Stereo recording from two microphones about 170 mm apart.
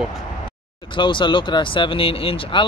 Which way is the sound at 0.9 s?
30° left (ahead or behind).